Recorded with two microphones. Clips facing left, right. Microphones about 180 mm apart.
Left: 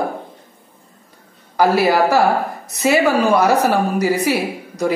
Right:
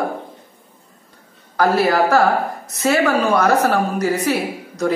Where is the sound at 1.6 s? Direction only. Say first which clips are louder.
Left 1 dB; 15° left (ahead or behind).